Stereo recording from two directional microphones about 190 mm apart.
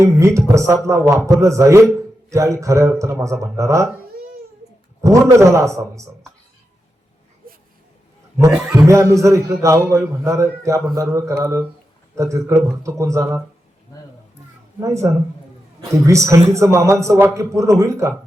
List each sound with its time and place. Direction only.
0.0 s a man's voice: 15° right (ahead or behind)
5.0 s a man's voice: 15° right (ahead or behind)
8.7 s a man's voice: 15° right (ahead or behind)
14.8 s a man's voice: 15° right (ahead or behind)